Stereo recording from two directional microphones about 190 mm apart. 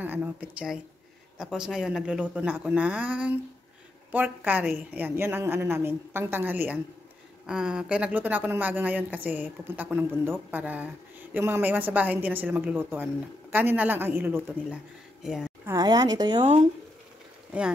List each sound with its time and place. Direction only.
0.0 s a woman's voice: 10° right (ahead or behind)
15.6 s a woman's voice: 20° right (ahead or behind)
16.3 s speech: 35° right (ahead or behind)